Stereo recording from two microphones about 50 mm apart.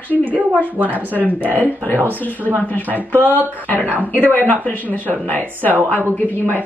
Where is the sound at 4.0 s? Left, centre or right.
Left.